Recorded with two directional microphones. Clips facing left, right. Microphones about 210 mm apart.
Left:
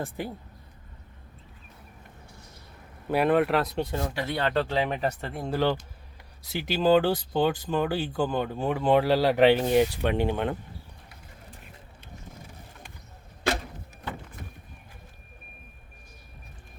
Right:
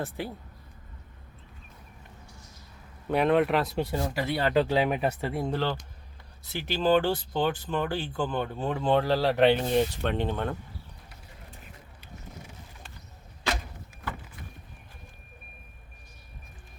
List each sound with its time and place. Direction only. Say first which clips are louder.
3.1 s speech: left 1 dB; 5° left (ahead or behind)
5.5 s speech: left 4 dB; 10° left (ahead or behind)
14.4 s vehicle: left 3 dB; 50° left (ahead or behind)